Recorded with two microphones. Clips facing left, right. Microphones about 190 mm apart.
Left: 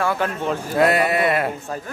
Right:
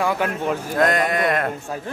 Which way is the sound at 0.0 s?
10° right (ahead or behind).